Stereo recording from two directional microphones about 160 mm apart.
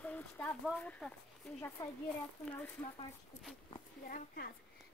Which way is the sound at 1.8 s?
20° left (ahead or behind).